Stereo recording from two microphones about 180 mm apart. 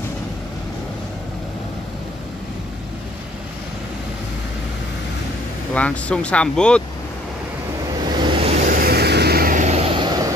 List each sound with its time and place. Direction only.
5.8 s speech: 5° left (ahead or behind)
8.0 s a sound: 25° right (ahead or behind)
8.6 s vehicle: 55° right (ahead or behind); by 10.2 s 25° right (ahead or behind)